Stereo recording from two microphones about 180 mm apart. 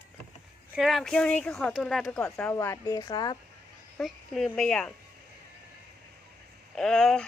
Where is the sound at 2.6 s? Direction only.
20° left (ahead or behind).